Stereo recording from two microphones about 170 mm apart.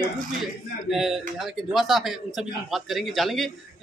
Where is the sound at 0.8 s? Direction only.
Centre (ahead or behind).